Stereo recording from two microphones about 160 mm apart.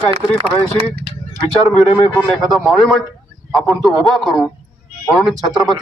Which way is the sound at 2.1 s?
Centre (ahead or behind).